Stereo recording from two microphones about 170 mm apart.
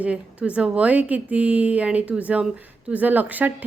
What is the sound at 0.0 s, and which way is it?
A woman's voice, 10° right (ahead or behind).